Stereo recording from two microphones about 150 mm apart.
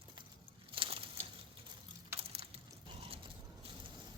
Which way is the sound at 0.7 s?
35° right (ahead or behind).